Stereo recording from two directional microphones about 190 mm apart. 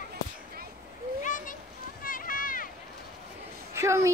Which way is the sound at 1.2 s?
45° left (ahead or behind).